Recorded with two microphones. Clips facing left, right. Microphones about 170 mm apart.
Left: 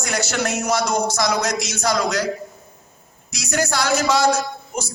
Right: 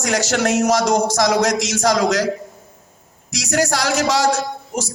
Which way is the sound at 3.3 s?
80° right.